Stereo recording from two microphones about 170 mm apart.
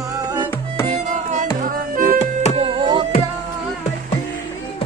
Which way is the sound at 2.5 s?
30° right (ahead or behind).